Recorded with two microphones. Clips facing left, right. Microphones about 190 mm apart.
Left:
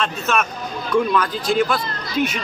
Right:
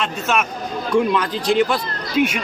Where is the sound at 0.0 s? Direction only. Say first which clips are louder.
Even; 15° right (ahead or behind).